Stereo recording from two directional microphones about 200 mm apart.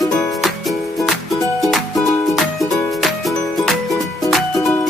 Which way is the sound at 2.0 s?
15° left (ahead or behind).